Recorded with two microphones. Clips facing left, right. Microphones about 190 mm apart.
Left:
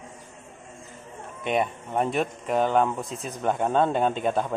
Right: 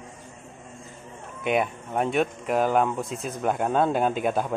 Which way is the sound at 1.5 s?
5° right (ahead or behind).